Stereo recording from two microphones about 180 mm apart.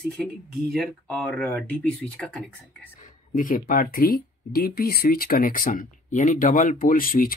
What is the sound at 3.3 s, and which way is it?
Speech, 50° left (ahead or behind).